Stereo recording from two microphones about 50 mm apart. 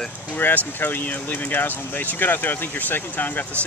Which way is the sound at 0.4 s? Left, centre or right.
Left.